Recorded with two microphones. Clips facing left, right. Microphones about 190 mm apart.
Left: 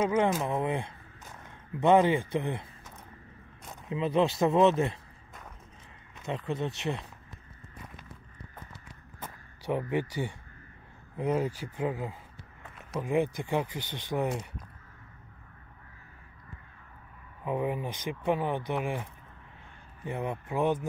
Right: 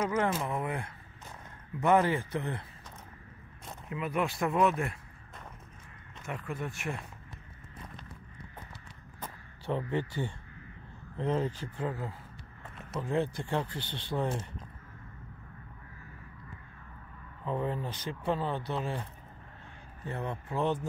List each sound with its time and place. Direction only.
0.1 s speech: 20° left (ahead or behind)
3.9 s speech: 25° left (ahead or behind)
6.2 s speech: 20° left (ahead or behind)
9.7 s speech: 15° left (ahead or behind)
17.5 s speech: 15° left (ahead or behind)
20.1 s speech: 15° left (ahead or behind)